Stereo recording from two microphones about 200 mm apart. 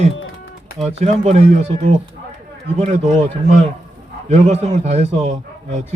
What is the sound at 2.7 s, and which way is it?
A man's voice, 30° right (ahead or behind).